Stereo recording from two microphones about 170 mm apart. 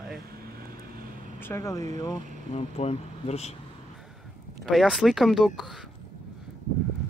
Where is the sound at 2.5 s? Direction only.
40° left (ahead or behind).